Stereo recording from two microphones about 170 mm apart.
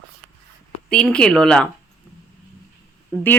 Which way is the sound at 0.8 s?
5° left (ahead or behind).